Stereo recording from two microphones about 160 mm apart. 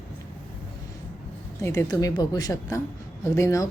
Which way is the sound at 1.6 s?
20° left (ahead or behind).